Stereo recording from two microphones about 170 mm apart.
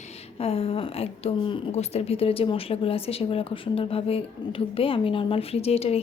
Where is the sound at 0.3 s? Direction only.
35° left (ahead or behind).